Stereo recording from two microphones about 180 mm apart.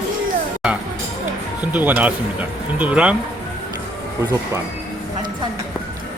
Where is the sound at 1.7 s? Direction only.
10° right (ahead or behind).